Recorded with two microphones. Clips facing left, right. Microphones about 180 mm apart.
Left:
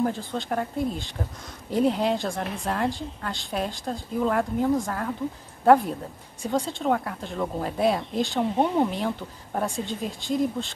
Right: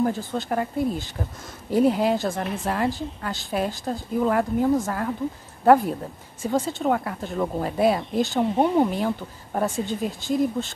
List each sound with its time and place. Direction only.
0.0 s speech: 5° right (ahead or behind)